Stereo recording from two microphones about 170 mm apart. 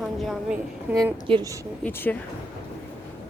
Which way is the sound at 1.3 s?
25° right (ahead or behind).